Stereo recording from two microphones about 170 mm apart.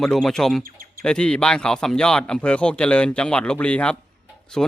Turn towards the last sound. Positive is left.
turn(degrees=0)  # may be behind; listen again after turning